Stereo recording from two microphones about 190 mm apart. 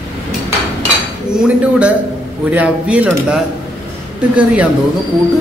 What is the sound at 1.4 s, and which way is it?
Speech, 5° right (ahead or behind).